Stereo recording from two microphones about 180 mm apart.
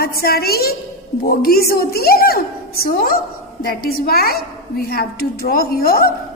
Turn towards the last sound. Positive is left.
turn(degrees=55)  # may be behind; listen again after turning